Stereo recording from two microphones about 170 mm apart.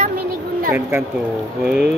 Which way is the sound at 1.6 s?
5° right (ahead or behind).